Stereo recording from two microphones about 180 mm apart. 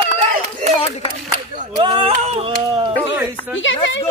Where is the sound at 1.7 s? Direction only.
30° right (ahead or behind).